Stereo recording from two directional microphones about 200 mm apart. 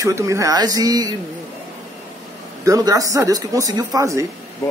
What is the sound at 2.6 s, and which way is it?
Speech, 15° right (ahead or behind).